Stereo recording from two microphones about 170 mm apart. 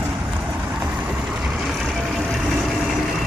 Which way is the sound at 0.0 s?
10° right (ahead or behind).